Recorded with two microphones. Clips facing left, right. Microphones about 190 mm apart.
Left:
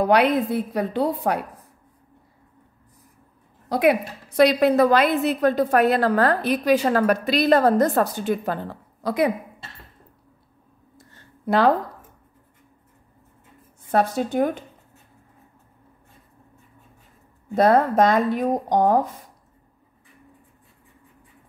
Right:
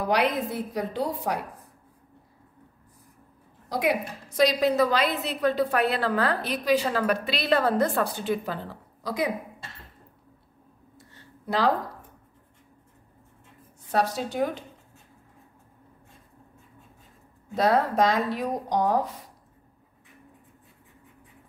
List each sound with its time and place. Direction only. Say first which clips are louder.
0.0 s a woman's voice: left 6 dB; 60° left (ahead or behind)
3.6 s a woman's voice: left 7 dB; 60° left (ahead or behind)
11.0 s a sound: even; 50° left (ahead or behind)
13.9 s a woman's voice: left 5 dB; 50° left (ahead or behind)
17.6 s a woman's voice: left 5 dB; 50° left (ahead or behind)